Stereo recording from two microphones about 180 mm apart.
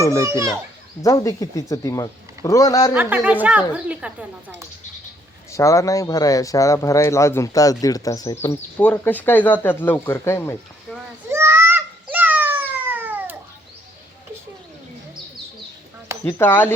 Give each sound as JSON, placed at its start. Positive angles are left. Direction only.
{"t": 0.2, "sound": "a woman's voice", "side_deg": -15}
{"t": 1.0, "sound": "speech", "side_deg": 20}
{"t": 2.9, "sound": "a woman's voice", "side_deg": -10}
{"t": 5.5, "sound": "speech", "side_deg": 15}
{"t": 11.3, "sound": "a sound", "side_deg": -15}
{"t": 16.2, "sound": "speech", "side_deg": 10}